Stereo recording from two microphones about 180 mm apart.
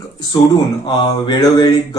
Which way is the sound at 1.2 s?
20° left (ahead or behind).